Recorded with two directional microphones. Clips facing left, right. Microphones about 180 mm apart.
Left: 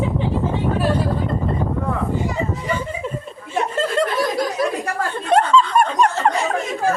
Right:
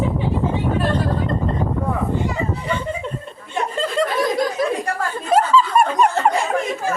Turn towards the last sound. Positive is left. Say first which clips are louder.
# right 1 dB
turn(degrees=-5)  # may be behind; listen again after turning